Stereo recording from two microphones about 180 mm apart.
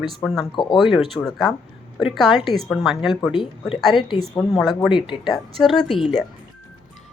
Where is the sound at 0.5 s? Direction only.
25° left (ahead or behind).